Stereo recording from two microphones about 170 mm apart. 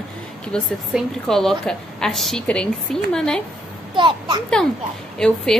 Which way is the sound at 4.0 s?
25° right (ahead or behind).